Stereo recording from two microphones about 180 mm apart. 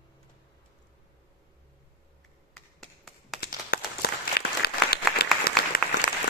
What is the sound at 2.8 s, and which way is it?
Tap, centre (ahead or behind).